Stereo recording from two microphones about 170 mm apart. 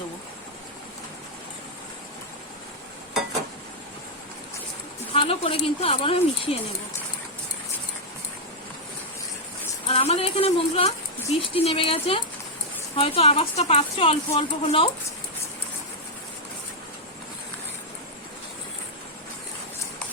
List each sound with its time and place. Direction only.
5.1 s a woman's voice: 35° left (ahead or behind)
9.8 s a woman's voice: 40° left (ahead or behind)